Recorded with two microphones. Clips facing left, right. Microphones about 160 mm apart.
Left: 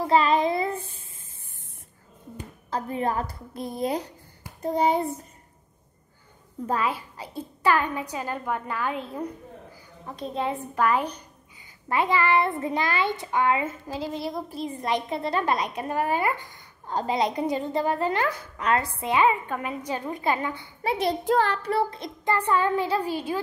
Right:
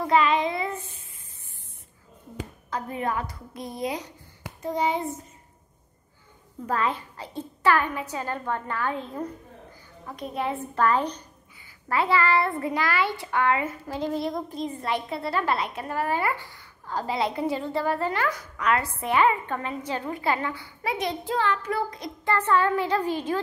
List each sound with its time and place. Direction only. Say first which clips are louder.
0.0 s child singing: left 1 dB; 35° left (ahead or behind)
2.7 s a woman's voice: left 2 dB; 30° left (ahead or behind)
3.5 s speech: left 3 dB; 5° left (ahead or behind)
3.8 s a woman's voice: left 3 dB; 30° left (ahead or behind)
6.7 s a woman's voice: even; 10° left (ahead or behind)
10.6 s a woman's voice: right 2 dB; 10° left (ahead or behind)
14.1 s a woman's voice: right 2 dB; 5° left (ahead or behind); by 18.9 s 30° left (ahead or behind)
18.9 s a woman's voice: even; 15° left (ahead or behind); by 21.2 s 30° left (ahead or behind)
21.2 s child singing: left 3 dB; 45° left (ahead or behind)
21.6 s a woman's voice: left 3 dB; 30° left (ahead or behind)
22.3 s a woman's voice: even; 15° left (ahead or behind)